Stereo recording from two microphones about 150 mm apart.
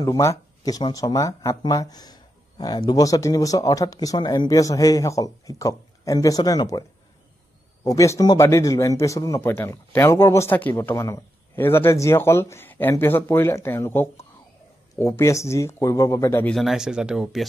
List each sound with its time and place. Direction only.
0.0 s speech: 20° left (ahead or behind)
7.8 s a man's voice: 20° left (ahead or behind)
16.5 s speech: centre (ahead or behind)